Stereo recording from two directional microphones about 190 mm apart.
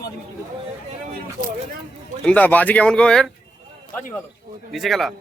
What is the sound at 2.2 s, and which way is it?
Speech, 5° left (ahead or behind).